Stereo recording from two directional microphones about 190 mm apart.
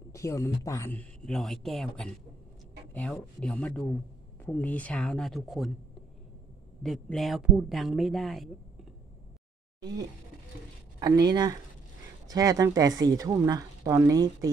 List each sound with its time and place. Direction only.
0.1 s speech: 15° left (ahead or behind); by 5.7 s centre (ahead or behind)
6.8 s speech: centre (ahead or behind)
9.8 s a sound: 20° right (ahead or behind)
11.0 s speech: 20° right (ahead or behind)